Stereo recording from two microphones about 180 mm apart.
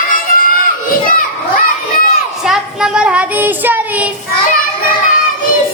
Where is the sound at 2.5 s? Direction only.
5° right (ahead or behind).